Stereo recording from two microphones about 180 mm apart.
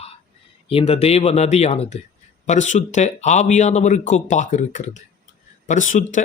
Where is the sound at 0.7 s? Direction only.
35° left (ahead or behind).